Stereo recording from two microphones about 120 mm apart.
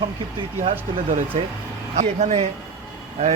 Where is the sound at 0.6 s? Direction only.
75° right (ahead or behind).